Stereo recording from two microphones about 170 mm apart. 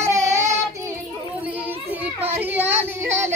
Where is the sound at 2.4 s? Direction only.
10° right (ahead or behind).